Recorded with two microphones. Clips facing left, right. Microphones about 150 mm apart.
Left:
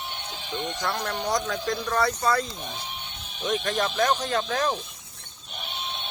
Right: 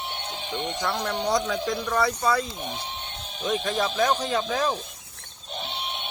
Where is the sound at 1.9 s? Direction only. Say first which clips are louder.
Even; 5° right (ahead or behind).